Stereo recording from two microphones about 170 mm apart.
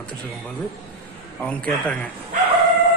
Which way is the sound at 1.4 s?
5° left (ahead or behind).